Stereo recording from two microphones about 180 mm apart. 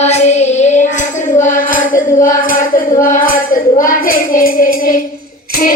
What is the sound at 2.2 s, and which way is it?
A child's voice, 50° left (ahead or behind).